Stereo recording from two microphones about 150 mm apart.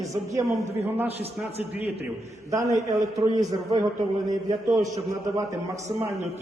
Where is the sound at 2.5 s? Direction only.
20° right (ahead or behind).